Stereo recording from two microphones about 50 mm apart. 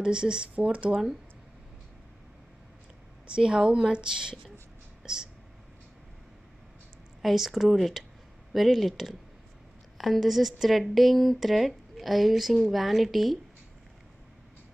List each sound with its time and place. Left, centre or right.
0.0 s speech: centre
3.3 s speech: centre
5.0 s a sound: centre
7.2 s speech: centre